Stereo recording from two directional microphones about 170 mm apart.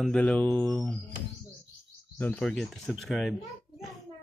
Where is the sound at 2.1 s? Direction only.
10° left (ahead or behind).